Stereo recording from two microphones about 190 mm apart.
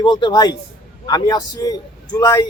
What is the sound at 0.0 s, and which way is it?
A man's voice, 25° left (ahead or behind).